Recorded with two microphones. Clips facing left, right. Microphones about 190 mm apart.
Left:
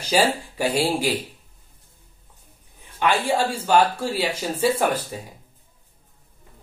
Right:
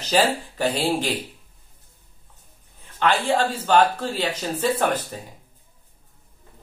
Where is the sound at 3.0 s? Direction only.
15° left (ahead or behind).